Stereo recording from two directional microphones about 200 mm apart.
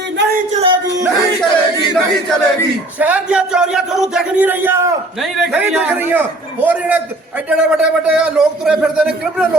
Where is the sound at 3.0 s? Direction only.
5° right (ahead or behind).